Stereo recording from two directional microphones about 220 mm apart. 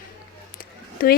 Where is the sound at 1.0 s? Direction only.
40° left (ahead or behind).